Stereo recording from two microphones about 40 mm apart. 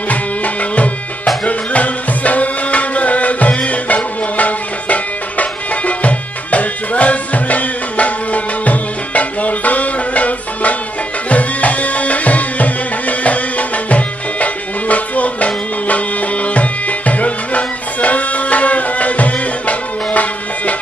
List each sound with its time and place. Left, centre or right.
0.1 s music: left